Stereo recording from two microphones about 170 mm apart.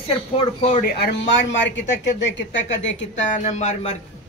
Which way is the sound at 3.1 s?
45° left (ahead or behind).